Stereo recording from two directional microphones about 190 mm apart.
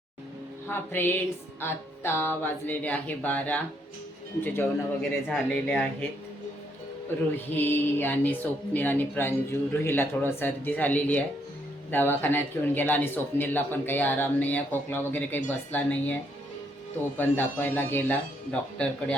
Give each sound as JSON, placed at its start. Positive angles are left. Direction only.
{"t": 0.7, "sound": "a man's voice", "side_deg": 10}
{"t": 7.3, "sound": "a man's voice", "side_deg": 10}